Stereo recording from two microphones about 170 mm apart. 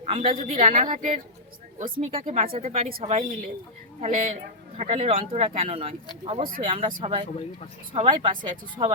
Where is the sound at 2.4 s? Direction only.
35° right (ahead or behind).